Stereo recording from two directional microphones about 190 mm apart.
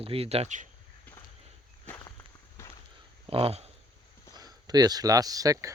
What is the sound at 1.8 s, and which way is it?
Walk, 15° left (ahead or behind).